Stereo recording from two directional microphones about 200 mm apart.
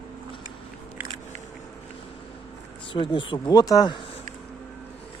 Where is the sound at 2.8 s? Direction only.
25° left (ahead or behind).